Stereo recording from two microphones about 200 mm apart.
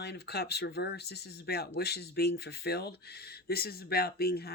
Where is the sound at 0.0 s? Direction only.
55° left (ahead or behind).